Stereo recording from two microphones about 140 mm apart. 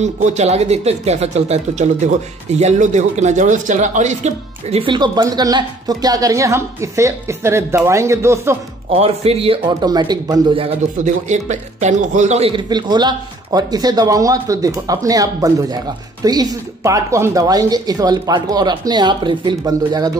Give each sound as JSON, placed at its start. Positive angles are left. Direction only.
{"t": 0.0, "sound": "speech", "side_deg": -55}
{"t": 8.9, "sound": "speech", "side_deg": -45}
{"t": 9.8, "sound": "a man's voice", "side_deg": -30}
{"t": 11.2, "sound": "a man's voice", "side_deg": -55}